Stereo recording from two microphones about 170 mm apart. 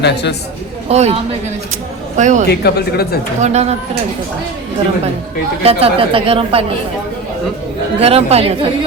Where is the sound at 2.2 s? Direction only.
45° right (ahead or behind).